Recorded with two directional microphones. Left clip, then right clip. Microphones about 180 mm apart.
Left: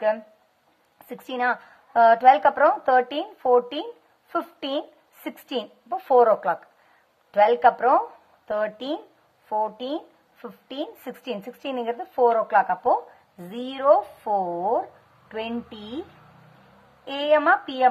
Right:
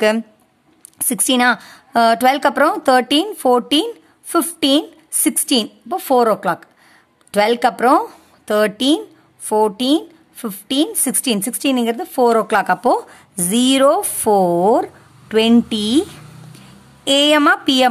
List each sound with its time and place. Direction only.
0.9 s a woman's voice: 45° right (ahead or behind)
17.0 s speech: 55° right (ahead or behind)